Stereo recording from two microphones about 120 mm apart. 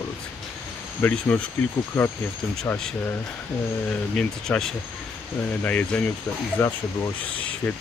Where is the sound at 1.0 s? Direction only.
15° left (ahead or behind).